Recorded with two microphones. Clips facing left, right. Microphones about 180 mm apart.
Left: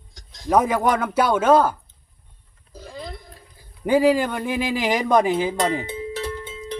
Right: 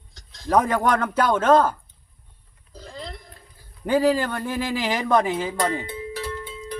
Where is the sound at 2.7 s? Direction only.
10° left (ahead or behind).